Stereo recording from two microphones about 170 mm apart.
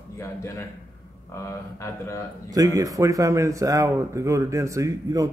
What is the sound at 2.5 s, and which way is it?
Speech, 20° right (ahead or behind).